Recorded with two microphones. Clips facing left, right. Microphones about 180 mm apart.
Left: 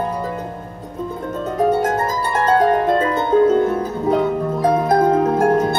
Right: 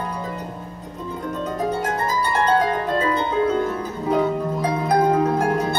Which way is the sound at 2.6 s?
50° left (ahead or behind).